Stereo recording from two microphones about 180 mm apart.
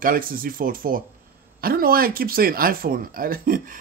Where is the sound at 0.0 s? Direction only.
50° right (ahead or behind).